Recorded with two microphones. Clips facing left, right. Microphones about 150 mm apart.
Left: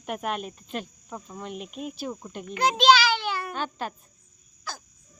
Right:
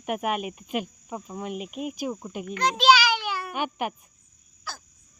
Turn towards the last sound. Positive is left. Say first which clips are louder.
# left 1 dB
turn(degrees=-5)  # may be behind; listen again after turning